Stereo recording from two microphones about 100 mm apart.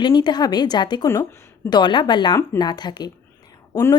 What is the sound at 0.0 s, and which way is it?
Speech, 50° left (ahead or behind).